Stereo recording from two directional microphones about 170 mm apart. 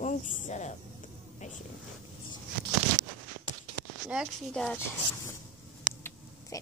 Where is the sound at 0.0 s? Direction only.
45° left (ahead or behind).